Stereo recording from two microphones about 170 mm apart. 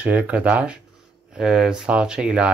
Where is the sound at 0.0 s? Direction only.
10° right (ahead or behind).